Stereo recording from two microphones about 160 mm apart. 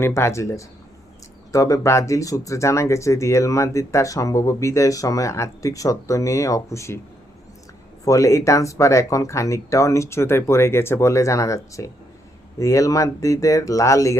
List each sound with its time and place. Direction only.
0.0 s speech: 15° left (ahead or behind)
8.0 s speech: 20° left (ahead or behind)